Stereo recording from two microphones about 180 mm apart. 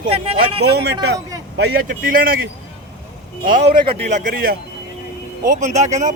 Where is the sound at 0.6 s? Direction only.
65° right (ahead or behind); by 3.7 s 50° right (ahead or behind).